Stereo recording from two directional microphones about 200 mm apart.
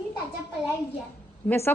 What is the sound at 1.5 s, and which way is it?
Speech, 10° left (ahead or behind).